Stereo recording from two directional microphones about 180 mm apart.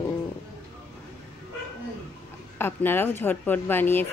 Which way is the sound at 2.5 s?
10° left (ahead or behind).